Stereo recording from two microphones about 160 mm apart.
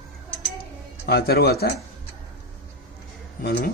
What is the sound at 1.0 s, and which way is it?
Speech, 80° left.